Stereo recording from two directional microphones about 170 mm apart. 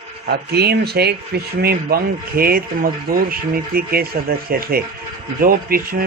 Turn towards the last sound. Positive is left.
turn(degrees=-60)  # may be behind; listen again after turning